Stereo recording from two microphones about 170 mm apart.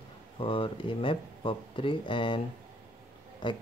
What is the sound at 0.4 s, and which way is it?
Speech, 30° left (ahead or behind).